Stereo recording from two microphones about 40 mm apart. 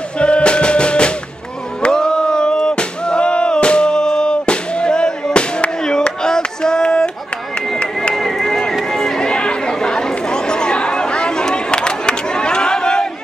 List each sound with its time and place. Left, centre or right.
0.2 s music: left
1.8 s a sound: centre
8.1 s run: centre
9.3 s chatter: left